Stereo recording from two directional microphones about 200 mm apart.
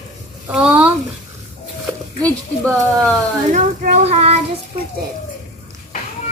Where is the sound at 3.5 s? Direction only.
40° right (ahead or behind).